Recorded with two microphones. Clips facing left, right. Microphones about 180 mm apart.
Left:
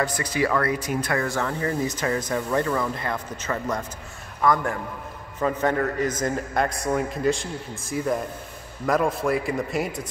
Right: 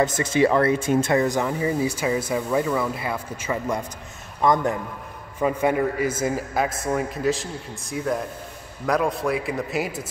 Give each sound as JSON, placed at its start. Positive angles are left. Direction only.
{"t": 0.0, "sound": "speech", "side_deg": -25}
{"t": 4.4, "sound": "a man's voice", "side_deg": -20}
{"t": 5.4, "sound": "a man's voice", "side_deg": -10}